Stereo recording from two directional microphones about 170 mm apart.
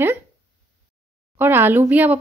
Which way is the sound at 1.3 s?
10° right (ahead or behind).